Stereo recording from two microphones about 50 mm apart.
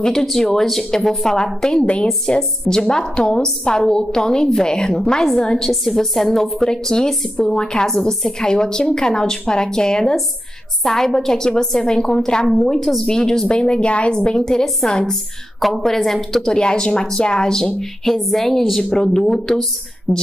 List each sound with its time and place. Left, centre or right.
0.0 s a woman's voice: centre
5.7 s a woman's voice: centre
20.1 s speech: left